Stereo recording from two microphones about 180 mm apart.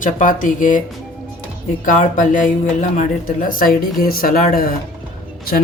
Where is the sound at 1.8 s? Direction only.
45° left (ahead or behind).